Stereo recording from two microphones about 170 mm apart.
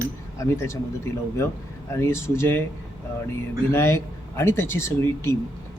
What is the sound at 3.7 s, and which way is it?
Speech, 15° left (ahead or behind).